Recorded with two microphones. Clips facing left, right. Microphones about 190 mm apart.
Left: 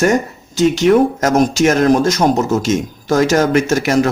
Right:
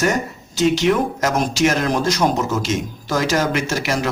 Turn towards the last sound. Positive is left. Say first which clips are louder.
# left 7 dB
turn(degrees=45)  # may be behind; listen again after turning